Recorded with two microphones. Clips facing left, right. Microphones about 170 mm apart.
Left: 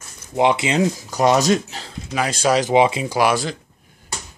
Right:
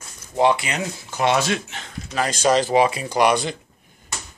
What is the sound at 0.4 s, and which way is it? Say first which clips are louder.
Speech: left 2 dB; 20° left (ahead or behind).